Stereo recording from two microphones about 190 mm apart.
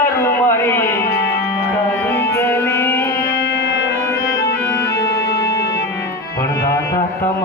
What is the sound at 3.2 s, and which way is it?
Music, 60° left (ahead or behind).